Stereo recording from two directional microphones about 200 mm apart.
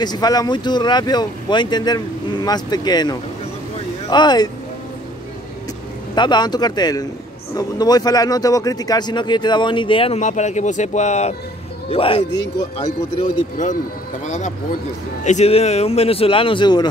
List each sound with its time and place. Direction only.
0.0 s speech: 20° left (ahead or behind)
6.1 s a man's voice: 20° left (ahead or behind)